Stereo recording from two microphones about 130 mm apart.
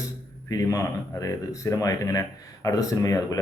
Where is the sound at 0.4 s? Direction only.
25° left (ahead or behind).